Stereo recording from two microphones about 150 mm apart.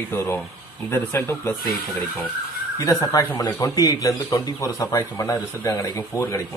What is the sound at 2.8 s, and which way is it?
Speech, 20° left (ahead or behind).